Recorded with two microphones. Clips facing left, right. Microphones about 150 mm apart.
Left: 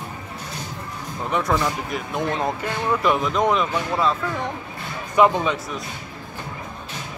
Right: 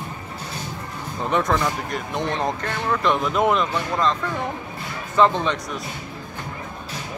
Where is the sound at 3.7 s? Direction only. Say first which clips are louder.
Even; 10° left (ahead or behind).